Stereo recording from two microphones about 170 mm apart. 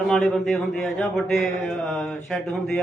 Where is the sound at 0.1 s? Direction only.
Centre (ahead or behind).